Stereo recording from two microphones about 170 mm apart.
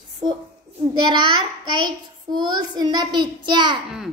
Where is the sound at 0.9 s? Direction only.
25° right (ahead or behind).